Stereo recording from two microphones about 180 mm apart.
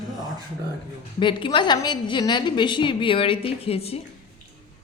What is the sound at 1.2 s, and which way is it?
A woman's voice, 25° left (ahead or behind).